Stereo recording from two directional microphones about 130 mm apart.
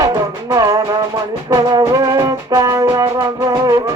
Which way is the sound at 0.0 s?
25° right (ahead or behind).